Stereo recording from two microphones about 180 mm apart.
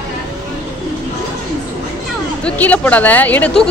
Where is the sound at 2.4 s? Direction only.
5° left (ahead or behind).